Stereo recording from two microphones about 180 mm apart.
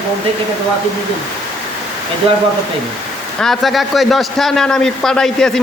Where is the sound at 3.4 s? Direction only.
Centre (ahead or behind).